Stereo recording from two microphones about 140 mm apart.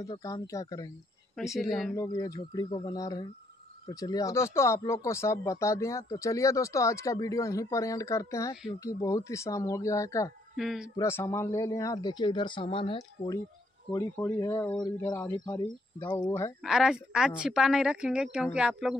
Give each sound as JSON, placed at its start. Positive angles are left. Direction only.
{"t": 0.2, "sound": "speech", "side_deg": 25}
{"t": 1.3, "sound": "a woman's voice", "side_deg": 0}
{"t": 2.0, "sound": "speech", "side_deg": 25}
{"t": 10.5, "sound": "speech", "side_deg": 0}
{"t": 11.0, "sound": "speech", "side_deg": 20}
{"t": 14.1, "sound": "speech", "side_deg": 20}
{"t": 16.6, "sound": "a woman's voice", "side_deg": -5}